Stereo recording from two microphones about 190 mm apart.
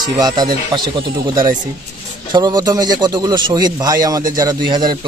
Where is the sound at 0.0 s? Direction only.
20° right (ahead or behind).